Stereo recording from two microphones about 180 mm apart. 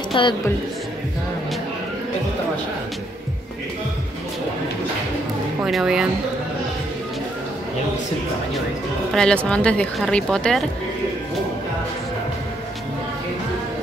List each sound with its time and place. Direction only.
0.1 s a woman's voice: 25° left (ahead or behind)
5.6 s speech: 5° right (ahead or behind)
9.1 s speech: 5° left (ahead or behind)